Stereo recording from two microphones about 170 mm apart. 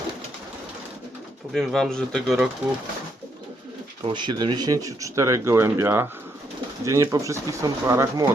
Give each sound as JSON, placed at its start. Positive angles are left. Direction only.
{"t": 1.5, "sound": "speech", "side_deg": 5}
{"t": 4.0, "sound": "speech", "side_deg": -25}